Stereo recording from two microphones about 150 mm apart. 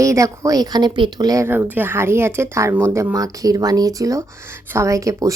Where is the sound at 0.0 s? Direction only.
20° right (ahead or behind).